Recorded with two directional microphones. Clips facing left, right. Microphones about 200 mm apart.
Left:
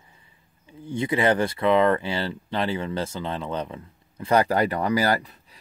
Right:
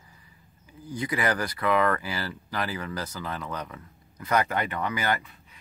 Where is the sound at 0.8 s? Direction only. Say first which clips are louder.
Left 6 dB; 25° left (ahead or behind).